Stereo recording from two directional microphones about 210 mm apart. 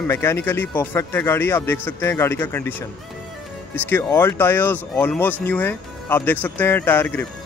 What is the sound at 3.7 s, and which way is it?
Speech, 10° left (ahead or behind).